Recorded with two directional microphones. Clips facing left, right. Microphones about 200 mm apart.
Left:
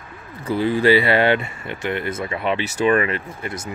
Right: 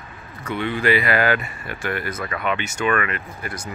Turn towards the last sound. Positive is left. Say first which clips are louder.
# left 3 dB
turn(degrees=25)  # may be behind; listen again after turning